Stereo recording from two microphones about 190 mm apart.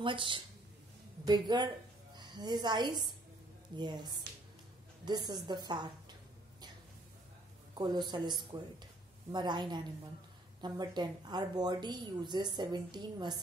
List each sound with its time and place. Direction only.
0.0 s a woman's voice: 25° right (ahead or behind)
7.7 s speech: 25° right (ahead or behind)